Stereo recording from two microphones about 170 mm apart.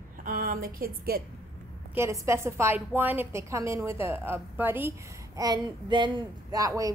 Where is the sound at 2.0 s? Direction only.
15° right (ahead or behind).